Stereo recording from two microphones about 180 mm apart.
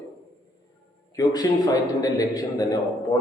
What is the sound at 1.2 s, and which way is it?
A man's voice, 20° left (ahead or behind).